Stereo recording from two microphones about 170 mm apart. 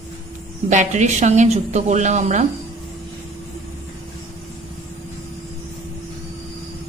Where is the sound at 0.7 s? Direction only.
45° right (ahead or behind).